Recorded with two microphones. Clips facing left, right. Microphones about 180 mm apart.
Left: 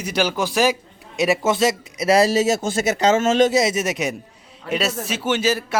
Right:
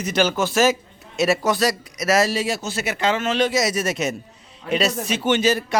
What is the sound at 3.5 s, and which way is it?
A man's voice, 25° left (ahead or behind).